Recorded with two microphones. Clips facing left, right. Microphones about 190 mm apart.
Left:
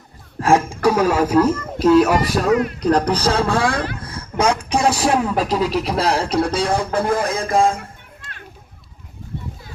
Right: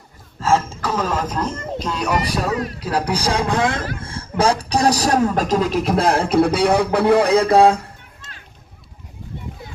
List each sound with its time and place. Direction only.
0.4 s speech: 15° left (ahead or behind); by 7.8 s 70° right (ahead or behind)